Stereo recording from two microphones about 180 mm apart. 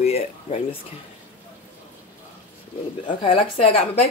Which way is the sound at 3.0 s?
35° left (ahead or behind).